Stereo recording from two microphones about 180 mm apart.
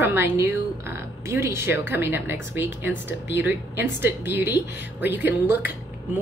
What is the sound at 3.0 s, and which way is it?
Speech, 80° left.